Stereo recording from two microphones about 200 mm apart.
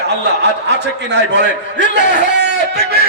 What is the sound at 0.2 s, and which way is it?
A man's voice, 55° right (ahead or behind).